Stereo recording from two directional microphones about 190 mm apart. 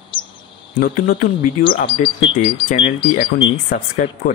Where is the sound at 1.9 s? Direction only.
25° left (ahead or behind).